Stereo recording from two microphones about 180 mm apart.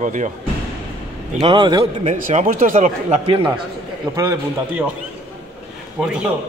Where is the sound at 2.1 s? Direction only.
45° right (ahead or behind).